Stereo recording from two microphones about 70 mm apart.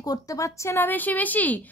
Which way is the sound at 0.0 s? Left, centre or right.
Left.